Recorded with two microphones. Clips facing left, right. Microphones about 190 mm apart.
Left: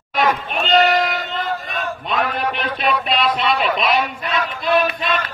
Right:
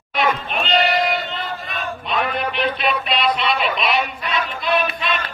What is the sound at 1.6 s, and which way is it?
Chant, 45° left (ahead or behind).